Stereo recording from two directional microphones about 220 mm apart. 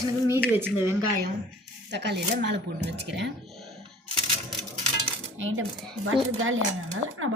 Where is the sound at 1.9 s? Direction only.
50° right (ahead or behind).